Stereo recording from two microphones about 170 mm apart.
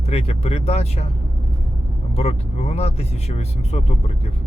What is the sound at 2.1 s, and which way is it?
Speech, 40° left (ahead or behind).